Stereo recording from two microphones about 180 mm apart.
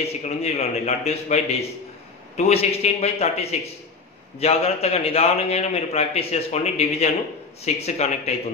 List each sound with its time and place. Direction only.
0.0 s a man's voice: 35° left (ahead or behind)